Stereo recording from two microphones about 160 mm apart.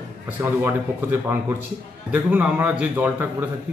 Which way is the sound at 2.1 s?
10° right (ahead or behind).